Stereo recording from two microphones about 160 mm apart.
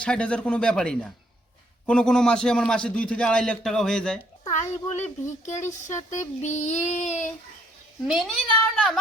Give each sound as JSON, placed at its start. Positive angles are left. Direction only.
{"t": 0.0, "sound": "a man's voice", "side_deg": 5}
{"t": 4.5, "sound": "a child's voice", "side_deg": 45}
{"t": 8.0, "sound": "a man's voice", "side_deg": 0}